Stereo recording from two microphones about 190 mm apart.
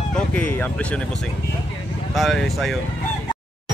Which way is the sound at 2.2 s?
Centre (ahead or behind).